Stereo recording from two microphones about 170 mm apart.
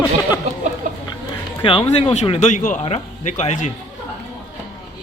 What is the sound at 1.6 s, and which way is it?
Speech, 30° left (ahead or behind).